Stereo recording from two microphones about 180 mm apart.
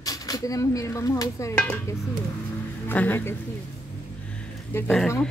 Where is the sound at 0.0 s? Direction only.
20° left (ahead or behind).